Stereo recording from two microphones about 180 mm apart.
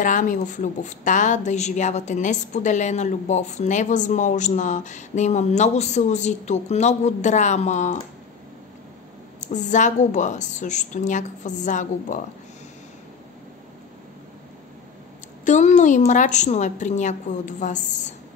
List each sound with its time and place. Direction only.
0.0 s a woman's voice: 45° left (ahead or behind)
9.5 s a woman's voice: 40° left (ahead or behind)
15.4 s a woman's voice: 40° left (ahead or behind)